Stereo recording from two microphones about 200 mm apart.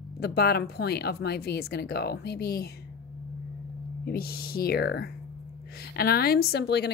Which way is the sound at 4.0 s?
50° left (ahead or behind).